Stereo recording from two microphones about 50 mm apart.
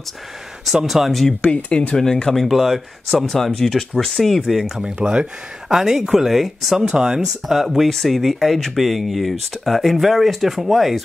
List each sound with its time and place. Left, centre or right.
0.8 s speech: centre
1.4 s speech: left
2.4 s speech: centre
4.4 s speech: centre